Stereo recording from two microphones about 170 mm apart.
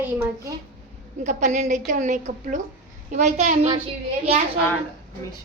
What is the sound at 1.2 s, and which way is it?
A woman's voice, 45° right (ahead or behind).